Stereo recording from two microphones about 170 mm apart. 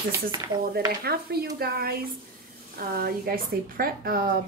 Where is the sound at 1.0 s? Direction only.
65° right (ahead or behind).